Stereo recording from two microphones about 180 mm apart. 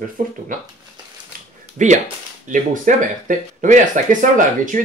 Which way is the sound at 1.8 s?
45° right (ahead or behind).